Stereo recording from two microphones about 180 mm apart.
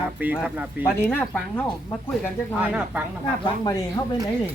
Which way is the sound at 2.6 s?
10° right (ahead or behind).